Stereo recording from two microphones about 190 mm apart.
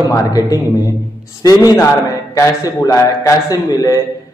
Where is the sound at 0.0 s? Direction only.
20° left (ahead or behind).